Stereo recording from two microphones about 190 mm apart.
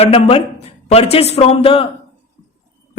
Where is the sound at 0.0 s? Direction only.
30° left (ahead or behind).